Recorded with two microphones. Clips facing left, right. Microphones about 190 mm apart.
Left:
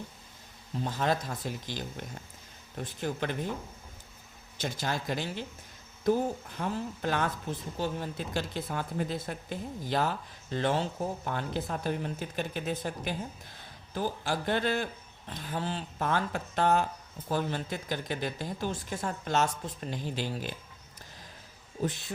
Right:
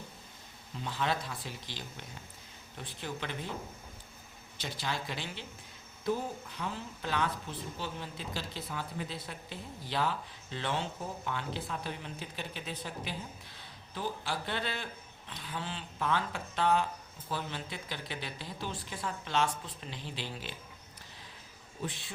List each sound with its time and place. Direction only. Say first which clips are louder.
0.8 s speech: left 4 dB; 45° left (ahead or behind)
4.5 s speech: left 4 dB; 45° left (ahead or behind)
21.8 s speech: left 7 dB; 40° left (ahead or behind)